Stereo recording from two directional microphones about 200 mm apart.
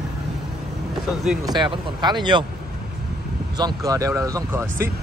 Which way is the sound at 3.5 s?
20° right (ahead or behind).